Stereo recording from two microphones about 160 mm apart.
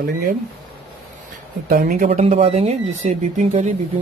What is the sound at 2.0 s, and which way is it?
Speech, 45° right (ahead or behind).